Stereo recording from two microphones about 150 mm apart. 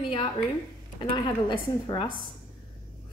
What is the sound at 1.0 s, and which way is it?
A woman's voice, 30° left (ahead or behind).